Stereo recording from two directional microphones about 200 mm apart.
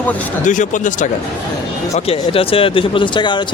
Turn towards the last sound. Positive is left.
turn(degrees=25)  # may be behind; listen again after turning